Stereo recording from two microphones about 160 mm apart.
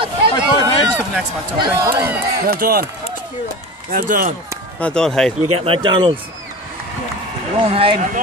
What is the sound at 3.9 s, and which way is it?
Speech, 60° right (ahead or behind).